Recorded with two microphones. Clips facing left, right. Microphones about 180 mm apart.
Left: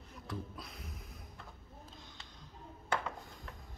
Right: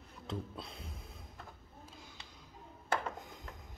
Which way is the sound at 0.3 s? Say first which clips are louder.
Right 2 dB; 30° right (ahead or behind).